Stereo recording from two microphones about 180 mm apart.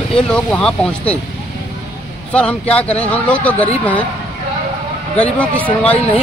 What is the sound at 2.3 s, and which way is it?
Speech, 5° left (ahead or behind).